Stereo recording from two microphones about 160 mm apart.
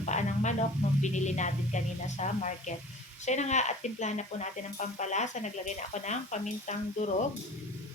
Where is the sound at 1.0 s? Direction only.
50° left (ahead or behind).